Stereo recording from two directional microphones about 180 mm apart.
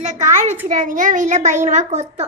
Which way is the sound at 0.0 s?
40° right (ahead or behind).